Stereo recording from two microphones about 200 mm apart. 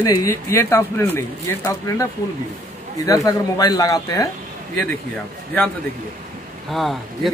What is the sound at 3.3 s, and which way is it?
A man's voice, 20° left (ahead or behind).